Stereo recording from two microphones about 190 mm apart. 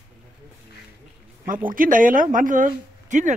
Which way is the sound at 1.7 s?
45° right (ahead or behind).